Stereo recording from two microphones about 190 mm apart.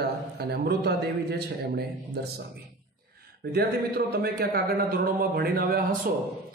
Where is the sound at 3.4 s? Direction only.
55° right (ahead or behind).